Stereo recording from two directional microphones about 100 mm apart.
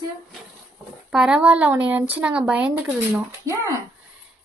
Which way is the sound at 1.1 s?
5° right (ahead or behind).